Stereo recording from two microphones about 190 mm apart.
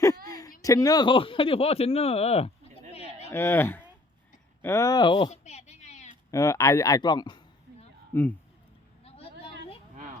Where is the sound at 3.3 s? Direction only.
15° left (ahead or behind); by 6.2 s 35° left (ahead or behind).